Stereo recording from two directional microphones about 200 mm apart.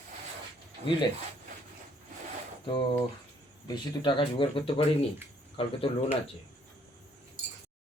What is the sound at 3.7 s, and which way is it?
Speech, 25° left (ahead or behind).